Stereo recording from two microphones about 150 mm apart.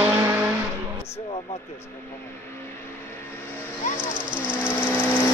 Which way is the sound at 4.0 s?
30° right (ahead or behind).